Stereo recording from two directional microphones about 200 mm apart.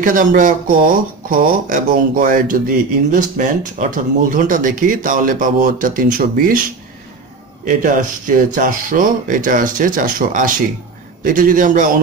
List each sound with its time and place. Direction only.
0.0 s speech: 40° right (ahead or behind)
7.6 s speech: 40° right (ahead or behind)